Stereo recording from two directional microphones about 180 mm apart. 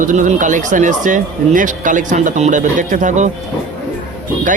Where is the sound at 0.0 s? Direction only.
45° right (ahead or behind).